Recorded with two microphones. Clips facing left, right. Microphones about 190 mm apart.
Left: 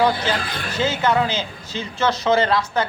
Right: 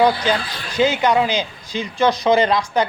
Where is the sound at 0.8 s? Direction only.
15° right (ahead or behind).